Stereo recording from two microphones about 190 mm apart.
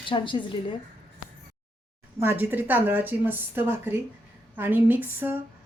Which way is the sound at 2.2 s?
10° right (ahead or behind).